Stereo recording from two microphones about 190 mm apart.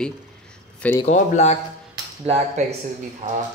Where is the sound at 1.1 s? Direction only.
35° left (ahead or behind).